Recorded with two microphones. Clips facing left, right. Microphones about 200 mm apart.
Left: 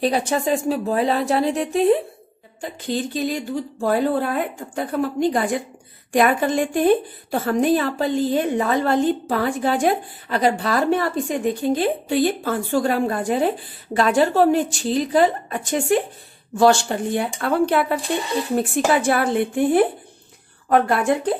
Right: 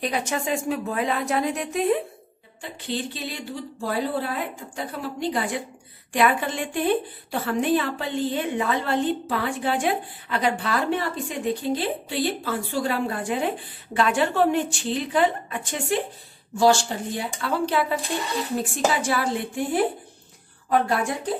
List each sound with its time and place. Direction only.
0.0 s a woman's voice: 35° left (ahead or behind)
2.6 s a woman's voice: 45° left (ahead or behind)
16.5 s speech: 60° left (ahead or behind)